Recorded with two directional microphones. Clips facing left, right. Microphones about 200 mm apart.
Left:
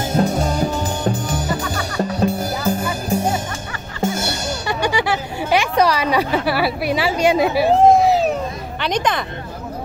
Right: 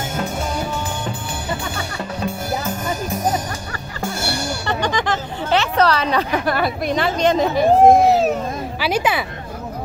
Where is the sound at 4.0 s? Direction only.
20° left (ahead or behind).